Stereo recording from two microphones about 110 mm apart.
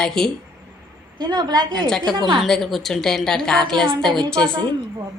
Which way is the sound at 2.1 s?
40° right (ahead or behind).